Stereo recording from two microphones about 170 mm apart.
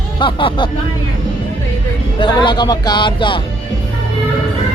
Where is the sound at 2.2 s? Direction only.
30° left (ahead or behind).